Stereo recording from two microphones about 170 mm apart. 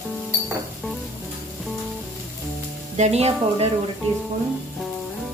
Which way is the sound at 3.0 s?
40° right (ahead or behind).